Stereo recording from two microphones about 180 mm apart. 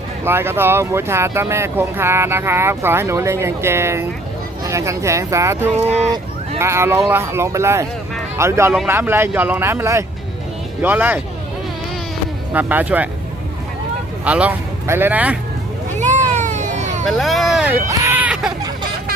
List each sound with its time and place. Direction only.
0.3 s speech: 10° right (ahead or behind)
5.7 s speech: 35° right (ahead or behind)
6.6 s speech: 15° right (ahead or behind)
12.5 s speech: 10° right (ahead or behind)
14.3 s speech: 10° right (ahead or behind)
16.0 s a sound: 40° right (ahead or behind)
17.1 s speech: centre (ahead or behind)